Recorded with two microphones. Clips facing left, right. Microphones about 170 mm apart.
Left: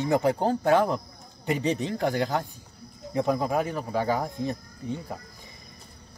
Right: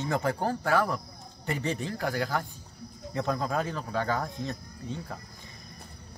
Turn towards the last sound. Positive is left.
turn(degrees=15)  # may be behind; listen again after turning